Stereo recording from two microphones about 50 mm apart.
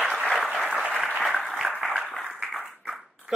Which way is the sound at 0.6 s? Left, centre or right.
Centre.